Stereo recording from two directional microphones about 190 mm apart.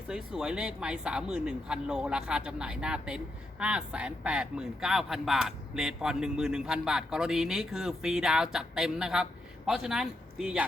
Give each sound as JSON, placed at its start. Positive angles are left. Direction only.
{"t": 0.1, "sound": "speech", "side_deg": -5}